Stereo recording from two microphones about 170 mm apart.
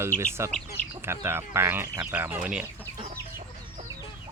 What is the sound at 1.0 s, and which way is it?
Speech, 15° right (ahead or behind).